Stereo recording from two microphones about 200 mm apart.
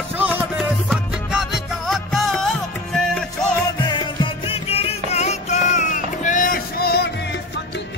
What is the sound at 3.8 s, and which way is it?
Music, 25° left (ahead or behind).